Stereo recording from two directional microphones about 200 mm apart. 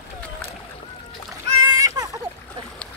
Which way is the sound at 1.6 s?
20° right (ahead or behind).